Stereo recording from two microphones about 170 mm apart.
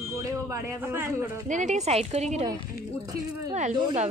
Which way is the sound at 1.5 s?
45° right (ahead or behind).